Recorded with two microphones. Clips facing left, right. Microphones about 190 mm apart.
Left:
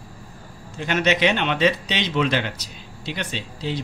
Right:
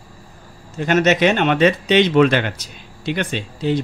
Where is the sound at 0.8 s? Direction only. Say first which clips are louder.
Right 5 dB; 45° right (ahead or behind).